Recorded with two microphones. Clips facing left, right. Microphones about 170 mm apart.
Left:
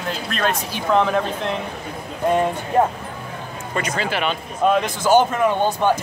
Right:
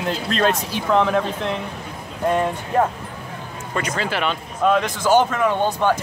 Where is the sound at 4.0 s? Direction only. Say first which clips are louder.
Even; 15° left (ahead or behind).